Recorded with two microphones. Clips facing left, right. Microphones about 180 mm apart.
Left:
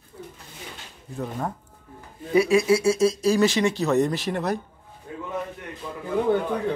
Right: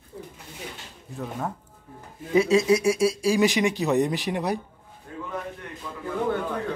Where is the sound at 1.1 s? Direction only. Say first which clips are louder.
Left 2 dB; centre (ahead or behind).